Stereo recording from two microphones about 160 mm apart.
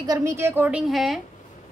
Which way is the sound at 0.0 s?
20° right (ahead or behind).